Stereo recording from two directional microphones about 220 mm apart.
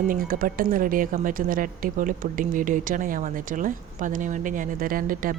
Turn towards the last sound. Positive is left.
turn(degrees=-40)  # may be behind; listen again after turning